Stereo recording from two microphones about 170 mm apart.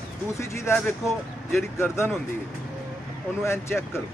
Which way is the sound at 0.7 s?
5° left (ahead or behind).